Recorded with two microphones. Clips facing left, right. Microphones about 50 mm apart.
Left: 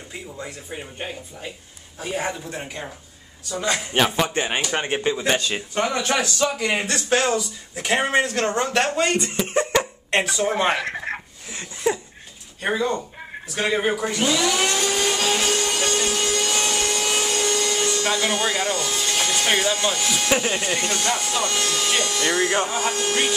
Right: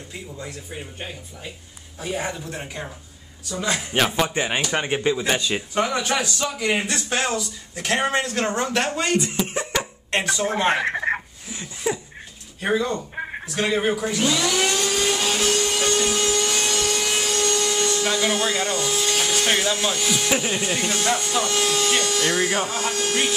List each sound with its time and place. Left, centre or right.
0.1 s speech: centre
5.2 s speech: centre
8.4 s speech: centre
9.5 s cough: left
10.1 s speech: centre
10.8 s speech: centre
11.6 s speech: centre
15.1 s a sound: centre
16.5 s wood: centre
22.7 s speech: centre